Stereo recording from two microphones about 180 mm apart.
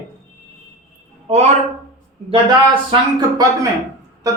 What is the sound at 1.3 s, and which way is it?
Speech, 35° right (ahead or behind).